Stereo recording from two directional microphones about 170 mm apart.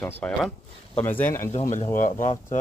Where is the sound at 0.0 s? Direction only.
5° left (ahead or behind).